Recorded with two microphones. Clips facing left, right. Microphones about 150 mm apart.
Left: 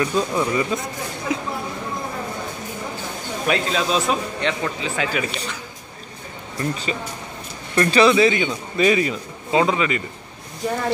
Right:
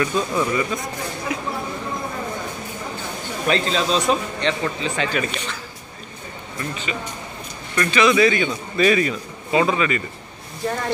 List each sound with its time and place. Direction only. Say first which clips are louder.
0.0 s a man's voice: even; 15° left (ahead or behind)
3.4 s a man's voice: right 1 dB; 5° left (ahead or behind)
6.6 s a man's voice: left 3 dB; 35° left (ahead or behind); by 10.0 s 20° left (ahead or behind)